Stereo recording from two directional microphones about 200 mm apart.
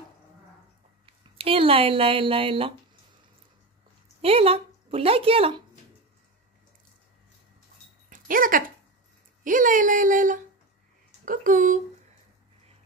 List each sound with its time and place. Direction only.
1.0 s speech: 30° right (ahead or behind)
4.2 s speech: 30° right (ahead or behind)
8.1 s a woman's voice: 45° right (ahead or behind)